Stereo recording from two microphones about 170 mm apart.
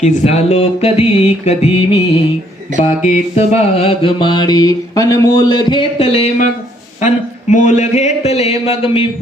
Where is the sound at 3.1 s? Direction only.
35° left (ahead or behind).